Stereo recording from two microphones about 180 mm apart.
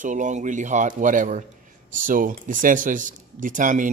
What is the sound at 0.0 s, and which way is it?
Speech, 45° right (ahead or behind).